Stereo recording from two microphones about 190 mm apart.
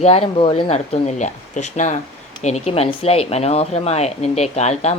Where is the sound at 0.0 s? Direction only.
30° left (ahead or behind).